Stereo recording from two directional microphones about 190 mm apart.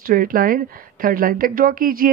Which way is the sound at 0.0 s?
50° right (ahead or behind).